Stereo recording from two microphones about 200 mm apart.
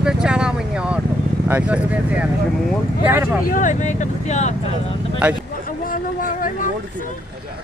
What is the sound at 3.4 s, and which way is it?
Speech, 40° left (ahead or behind).